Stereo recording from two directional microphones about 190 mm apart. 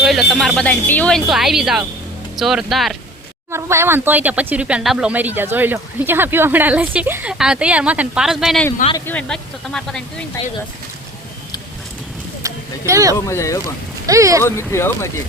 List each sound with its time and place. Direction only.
0.1 s speech: centre (ahead or behind)
3.5 s speech: 15° right (ahead or behind); by 10.2 s 5° left (ahead or behind)
12.4 s a sound: 15° right (ahead or behind)
13.1 s speech: 15° left (ahead or behind)
14.1 s speech: 15° right (ahead or behind)
14.4 s speech: 15° left (ahead or behind)